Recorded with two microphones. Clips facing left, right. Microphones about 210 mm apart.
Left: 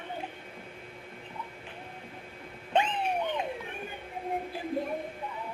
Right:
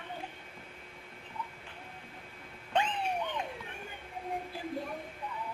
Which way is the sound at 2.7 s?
20° left (ahead or behind).